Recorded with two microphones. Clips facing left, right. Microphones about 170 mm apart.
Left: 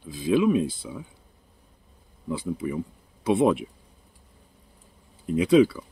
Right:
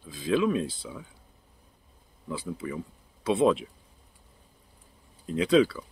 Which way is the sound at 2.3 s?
15° left (ahead or behind).